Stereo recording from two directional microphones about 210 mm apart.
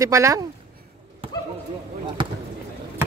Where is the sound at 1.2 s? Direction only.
25° right (ahead or behind).